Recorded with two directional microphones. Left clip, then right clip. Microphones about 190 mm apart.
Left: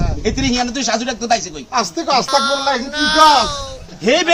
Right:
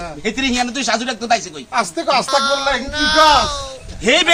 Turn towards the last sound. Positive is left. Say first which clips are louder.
# right 1 dB
turn(degrees=10)  # may be behind; listen again after turning